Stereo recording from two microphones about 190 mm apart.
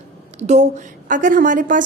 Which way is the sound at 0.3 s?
35° right (ahead or behind).